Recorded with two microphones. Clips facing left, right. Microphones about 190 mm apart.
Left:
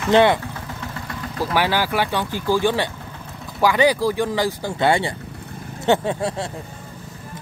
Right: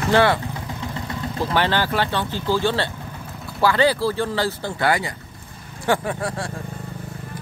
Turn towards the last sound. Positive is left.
turn(degrees=25)  # may be behind; listen again after turning